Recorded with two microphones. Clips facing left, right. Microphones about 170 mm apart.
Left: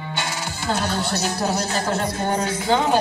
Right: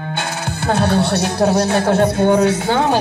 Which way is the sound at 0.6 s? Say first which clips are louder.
Right 8 dB; 60° right (ahead or behind).